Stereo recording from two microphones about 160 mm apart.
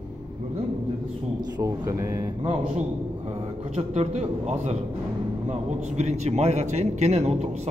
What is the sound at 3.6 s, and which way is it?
A man's voice, 40° right (ahead or behind).